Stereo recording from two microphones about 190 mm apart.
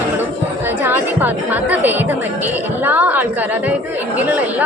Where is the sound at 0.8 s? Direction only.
10° right (ahead or behind).